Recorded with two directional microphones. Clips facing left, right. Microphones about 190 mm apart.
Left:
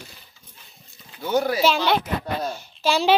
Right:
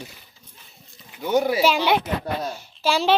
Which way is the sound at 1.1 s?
15° right (ahead or behind).